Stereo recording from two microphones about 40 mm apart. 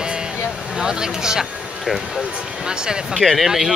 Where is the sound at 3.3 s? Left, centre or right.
Centre.